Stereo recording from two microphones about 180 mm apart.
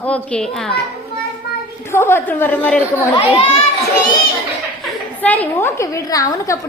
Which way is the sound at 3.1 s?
30° left (ahead or behind).